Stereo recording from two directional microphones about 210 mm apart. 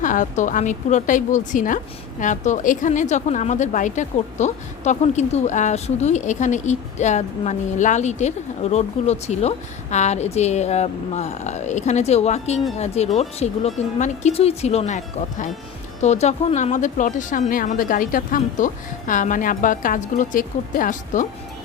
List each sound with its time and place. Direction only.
0.0 s a woman's voice: 35° left (ahead or behind)